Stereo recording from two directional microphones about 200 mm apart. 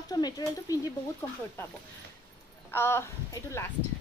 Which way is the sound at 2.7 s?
10° left (ahead or behind).